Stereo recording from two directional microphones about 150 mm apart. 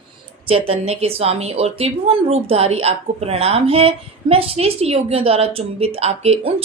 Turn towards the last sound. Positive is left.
turn(degrees=-40)  # may be behind; listen again after turning